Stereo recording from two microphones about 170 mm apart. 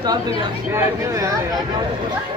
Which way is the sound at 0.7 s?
20° right (ahead or behind).